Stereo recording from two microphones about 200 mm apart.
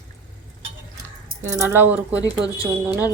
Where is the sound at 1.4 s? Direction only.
10° right (ahead or behind).